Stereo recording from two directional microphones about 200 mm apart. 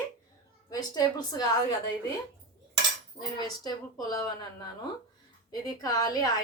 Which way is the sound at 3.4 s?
20° left (ahead or behind).